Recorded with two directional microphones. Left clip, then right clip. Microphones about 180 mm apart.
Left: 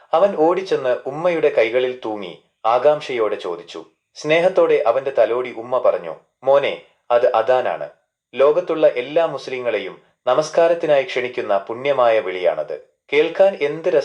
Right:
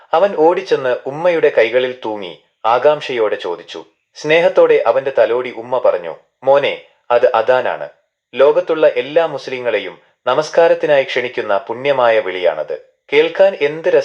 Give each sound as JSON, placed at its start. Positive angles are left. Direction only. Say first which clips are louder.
{"t": 0.1, "sound": "speech", "louder": "right 3 dB", "side_deg": -15}